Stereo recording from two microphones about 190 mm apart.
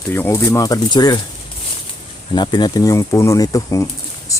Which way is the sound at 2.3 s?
25° left (ahead or behind).